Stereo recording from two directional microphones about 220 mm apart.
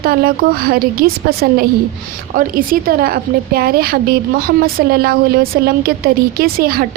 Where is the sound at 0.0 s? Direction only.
45° right (ahead or behind).